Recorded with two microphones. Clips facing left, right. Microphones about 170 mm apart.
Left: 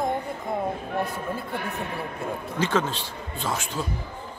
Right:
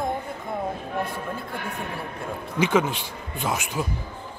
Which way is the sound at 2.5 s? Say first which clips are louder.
Right 4 dB; 15° right (ahead or behind).